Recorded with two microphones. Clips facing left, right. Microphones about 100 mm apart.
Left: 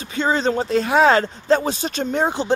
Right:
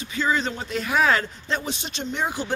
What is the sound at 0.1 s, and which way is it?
Speech, 35° left (ahead or behind).